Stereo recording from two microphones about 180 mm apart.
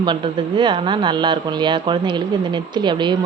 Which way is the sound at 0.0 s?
25° right (ahead or behind).